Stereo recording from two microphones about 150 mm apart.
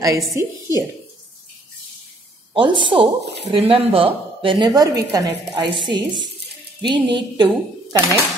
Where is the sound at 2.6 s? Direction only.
35° right (ahead or behind).